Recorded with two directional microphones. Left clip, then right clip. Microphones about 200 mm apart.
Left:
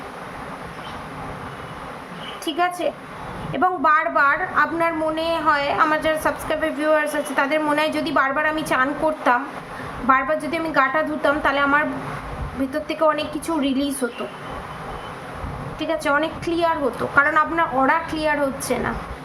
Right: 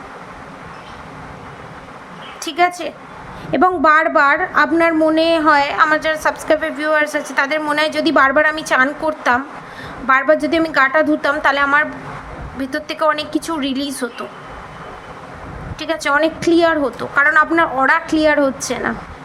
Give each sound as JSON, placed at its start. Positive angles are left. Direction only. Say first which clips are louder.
{"t": 2.4, "sound": "a woman's voice", "louder": "right 5 dB", "side_deg": -35}
{"t": 15.8, "sound": "a woman's voice", "louder": "right 5 dB", "side_deg": -35}